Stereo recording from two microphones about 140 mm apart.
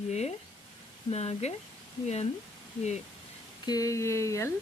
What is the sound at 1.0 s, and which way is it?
Speech, 50° left (ahead or behind).